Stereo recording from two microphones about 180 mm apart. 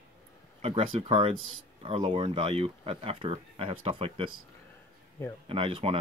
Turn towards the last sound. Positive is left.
turn(degrees=-30)  # may be behind; listen again after turning